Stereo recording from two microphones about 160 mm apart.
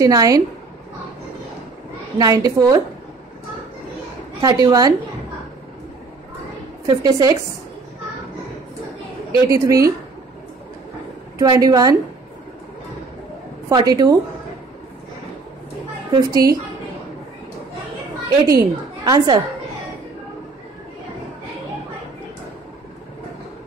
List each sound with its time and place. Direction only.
0.0 s a woman's voice: 20° right (ahead or behind)
2.1 s a woman's voice: 25° right (ahead or behind)
4.4 s a woman's voice: 20° right (ahead or behind)
6.9 s a woman's voice: 20° right (ahead or behind)
9.5 s a woman's voice: 20° right (ahead or behind)
11.3 s a woman's voice: 20° right (ahead or behind)
13.7 s a woman's voice: 25° right (ahead or behind)
16.2 s a woman's voice: 25° right (ahead or behind)
18.5 s a woman's voice: 20° right (ahead or behind)